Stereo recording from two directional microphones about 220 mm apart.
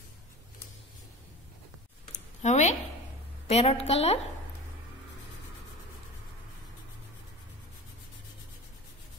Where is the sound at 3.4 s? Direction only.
30° left (ahead or behind).